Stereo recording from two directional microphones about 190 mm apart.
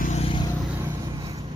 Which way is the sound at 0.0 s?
35° left (ahead or behind).